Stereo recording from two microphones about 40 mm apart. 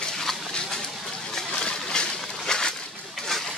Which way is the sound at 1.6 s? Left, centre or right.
Left.